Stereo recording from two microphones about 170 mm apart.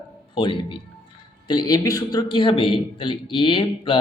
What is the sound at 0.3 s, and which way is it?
A man's voice, 30° left (ahead or behind).